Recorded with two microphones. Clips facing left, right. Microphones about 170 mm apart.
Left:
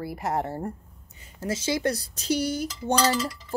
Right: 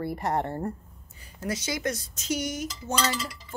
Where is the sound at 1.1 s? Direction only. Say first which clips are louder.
Left 2 dB; 25° left (ahead or behind).